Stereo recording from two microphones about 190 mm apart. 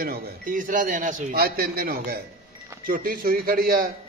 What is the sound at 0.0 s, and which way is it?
A man's voice, 50° right (ahead or behind).